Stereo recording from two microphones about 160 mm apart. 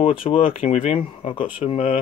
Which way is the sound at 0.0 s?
35° left (ahead or behind).